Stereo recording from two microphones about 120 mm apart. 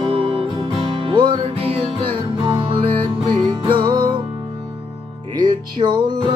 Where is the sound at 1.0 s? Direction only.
45° right (ahead or behind).